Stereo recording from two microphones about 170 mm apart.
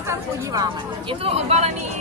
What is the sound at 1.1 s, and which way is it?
Speech, 35° right (ahead or behind).